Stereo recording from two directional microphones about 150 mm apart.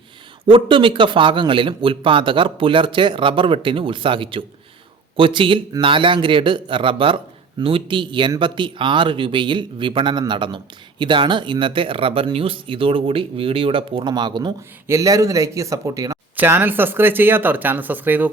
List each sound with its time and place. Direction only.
0.4 s speech: 35° right (ahead or behind); by 18.3 s 10° right (ahead or behind)